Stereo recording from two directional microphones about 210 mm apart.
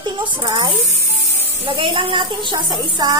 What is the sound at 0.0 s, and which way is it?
A woman's voice, 20° right (ahead or behind).